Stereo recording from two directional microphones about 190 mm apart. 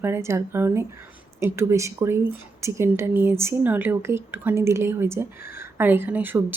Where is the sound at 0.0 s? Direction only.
15° right (ahead or behind).